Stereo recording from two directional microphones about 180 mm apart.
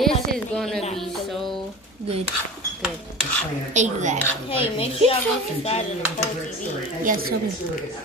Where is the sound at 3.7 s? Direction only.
40° right (ahead or behind).